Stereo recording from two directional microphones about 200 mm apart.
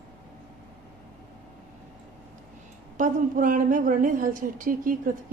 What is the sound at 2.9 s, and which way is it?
A woman's voice, 40° right (ahead or behind).